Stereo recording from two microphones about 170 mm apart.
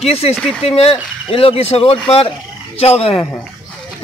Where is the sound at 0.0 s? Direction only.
35° left (ahead or behind).